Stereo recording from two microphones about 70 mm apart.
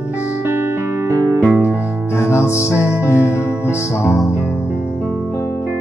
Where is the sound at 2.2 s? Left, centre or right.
Left.